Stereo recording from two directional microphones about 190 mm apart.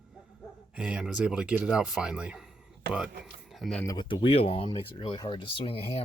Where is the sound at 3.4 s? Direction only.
Centre (ahead or behind).